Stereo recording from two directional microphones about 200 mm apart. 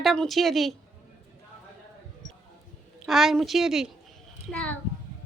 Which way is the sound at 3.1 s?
Centre (ahead or behind).